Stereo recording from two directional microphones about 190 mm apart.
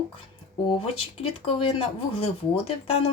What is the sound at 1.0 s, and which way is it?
Speech, 30° left (ahead or behind).